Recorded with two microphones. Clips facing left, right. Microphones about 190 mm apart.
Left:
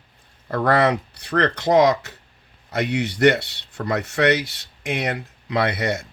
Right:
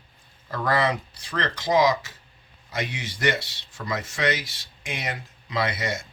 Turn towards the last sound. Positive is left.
turn(degrees=60)  # may be behind; listen again after turning